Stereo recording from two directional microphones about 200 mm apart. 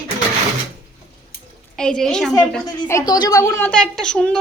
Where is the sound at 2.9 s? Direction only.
15° left (ahead or behind).